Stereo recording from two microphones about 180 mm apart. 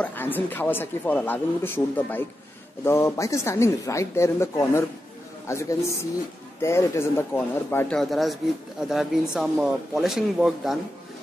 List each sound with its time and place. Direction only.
0.0 s speech: 10° left (ahead or behind)